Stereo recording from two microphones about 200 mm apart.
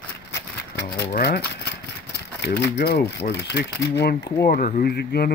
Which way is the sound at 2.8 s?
55° left (ahead or behind).